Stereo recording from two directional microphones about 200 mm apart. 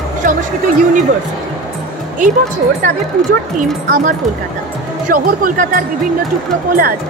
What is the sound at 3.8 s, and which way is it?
Speech, 40° right (ahead or behind).